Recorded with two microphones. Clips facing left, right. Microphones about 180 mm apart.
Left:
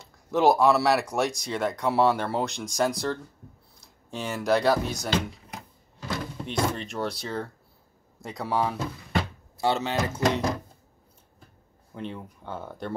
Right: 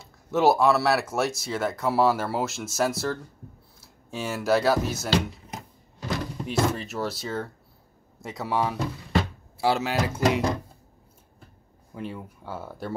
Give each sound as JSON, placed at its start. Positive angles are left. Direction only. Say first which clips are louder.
{"t": 0.0, "sound": "speech", "louder": "even", "side_deg": 0}
{"t": 5.5, "sound": "a sound", "louder": "right 2 dB", "side_deg": -20}
{"t": 6.4, "sound": "speech", "louder": "right 2 dB", "side_deg": -5}
{"t": 11.9, "sound": "speech", "louder": "right 1 dB", "side_deg": -5}